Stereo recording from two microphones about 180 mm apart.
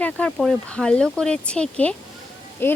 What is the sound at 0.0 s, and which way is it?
Speech, 5° left (ahead or behind).